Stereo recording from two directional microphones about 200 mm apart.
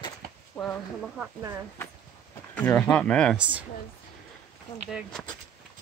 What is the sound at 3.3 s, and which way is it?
Speech, 5° right (ahead or behind).